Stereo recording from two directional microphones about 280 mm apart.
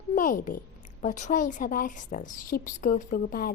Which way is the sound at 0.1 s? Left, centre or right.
Left.